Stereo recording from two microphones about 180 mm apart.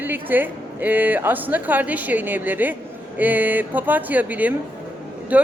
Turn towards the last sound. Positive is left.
turn(degrees=-10)  # may be behind; listen again after turning